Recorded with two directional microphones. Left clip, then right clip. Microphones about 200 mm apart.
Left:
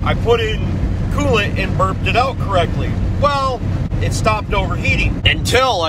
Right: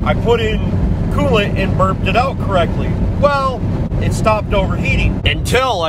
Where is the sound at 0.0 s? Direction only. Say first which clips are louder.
Right 1 dB; 15° right (ahead or behind).